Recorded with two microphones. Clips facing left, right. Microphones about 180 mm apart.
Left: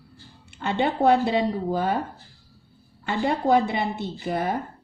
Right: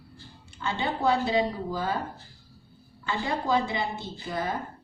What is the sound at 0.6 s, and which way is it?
A woman's voice, 60° left (ahead or behind).